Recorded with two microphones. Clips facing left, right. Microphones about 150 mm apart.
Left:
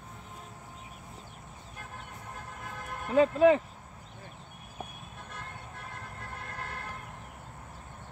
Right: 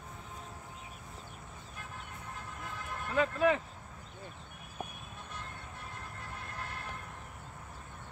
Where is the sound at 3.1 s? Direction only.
25° left (ahead or behind).